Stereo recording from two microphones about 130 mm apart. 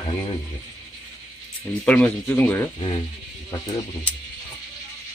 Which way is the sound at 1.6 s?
10° left (ahead or behind).